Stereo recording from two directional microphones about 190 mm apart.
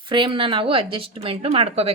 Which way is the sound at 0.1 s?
25° right (ahead or behind).